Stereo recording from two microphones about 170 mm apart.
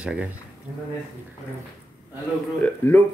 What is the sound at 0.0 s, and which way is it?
Speech, 5° right (ahead or behind).